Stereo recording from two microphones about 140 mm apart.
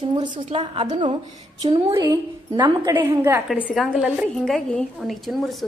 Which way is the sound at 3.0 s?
15° right (ahead or behind).